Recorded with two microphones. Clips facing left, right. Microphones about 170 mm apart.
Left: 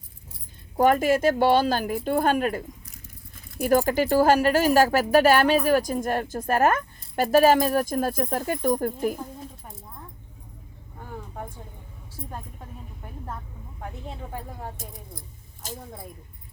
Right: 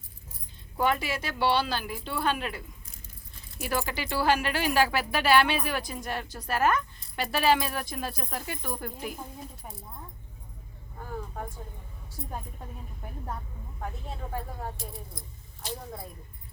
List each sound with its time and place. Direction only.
0.8 s speech: 45° left (ahead or behind)
15.6 s speech: 45° left (ahead or behind)